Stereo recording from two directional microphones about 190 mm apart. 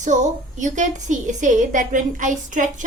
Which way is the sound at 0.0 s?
40° right (ahead or behind).